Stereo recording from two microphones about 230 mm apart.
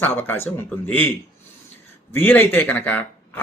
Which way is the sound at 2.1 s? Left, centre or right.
Centre.